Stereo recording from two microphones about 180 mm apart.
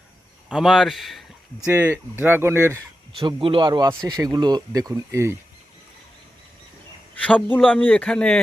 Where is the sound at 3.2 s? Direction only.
30° right (ahead or behind).